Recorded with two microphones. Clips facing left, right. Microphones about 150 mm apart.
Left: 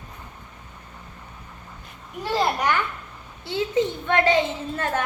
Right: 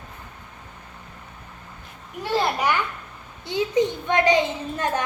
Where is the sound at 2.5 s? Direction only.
10° right (ahead or behind).